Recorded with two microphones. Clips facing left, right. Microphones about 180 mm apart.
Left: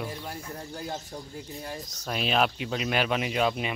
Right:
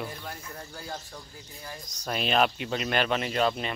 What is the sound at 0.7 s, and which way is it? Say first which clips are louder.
Speech: left 4 dB; 30° left (ahead or behind).